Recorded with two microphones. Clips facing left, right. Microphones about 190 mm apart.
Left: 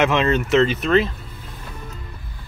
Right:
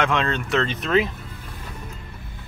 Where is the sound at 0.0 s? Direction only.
5° left (ahead or behind).